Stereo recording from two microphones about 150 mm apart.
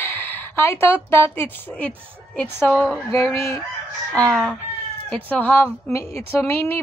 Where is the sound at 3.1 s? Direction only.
15° left (ahead or behind).